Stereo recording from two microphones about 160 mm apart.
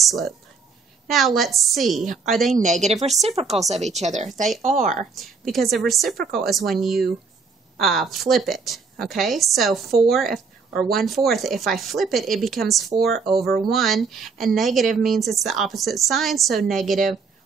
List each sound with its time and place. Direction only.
0.0 s a woman's voice: centre (ahead or behind)
2.5 s speech: 50° right (ahead or behind)
5.1 s a woman's voice: centre (ahead or behind)